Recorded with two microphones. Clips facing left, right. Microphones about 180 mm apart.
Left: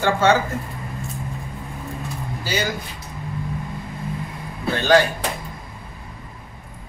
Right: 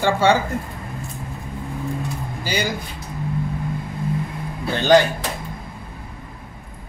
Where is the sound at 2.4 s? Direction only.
15° right (ahead or behind).